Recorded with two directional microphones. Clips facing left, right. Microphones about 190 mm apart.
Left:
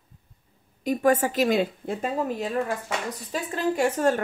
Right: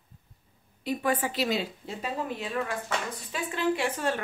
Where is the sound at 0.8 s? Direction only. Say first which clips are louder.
Left 7 dB; 45° left (ahead or behind).